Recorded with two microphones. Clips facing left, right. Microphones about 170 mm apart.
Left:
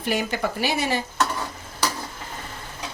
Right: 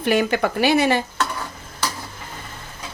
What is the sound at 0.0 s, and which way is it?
A woman's voice, 65° right (ahead or behind).